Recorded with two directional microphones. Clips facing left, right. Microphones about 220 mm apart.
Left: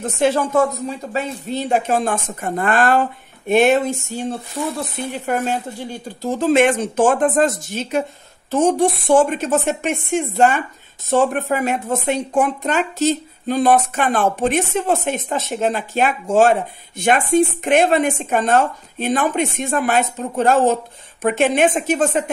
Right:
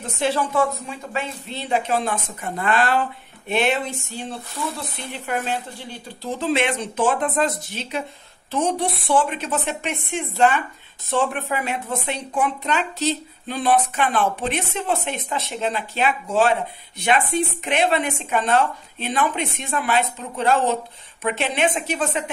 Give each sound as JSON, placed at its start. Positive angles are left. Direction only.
{"t": 0.0, "sound": "speech", "side_deg": 45}